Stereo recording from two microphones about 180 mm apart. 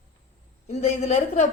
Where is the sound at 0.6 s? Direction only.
40° left (ahead or behind).